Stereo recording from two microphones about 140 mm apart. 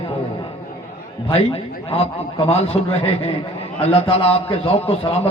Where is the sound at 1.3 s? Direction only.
45° left (ahead or behind).